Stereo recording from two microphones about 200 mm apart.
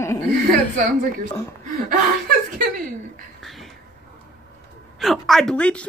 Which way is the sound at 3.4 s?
Centre (ahead or behind).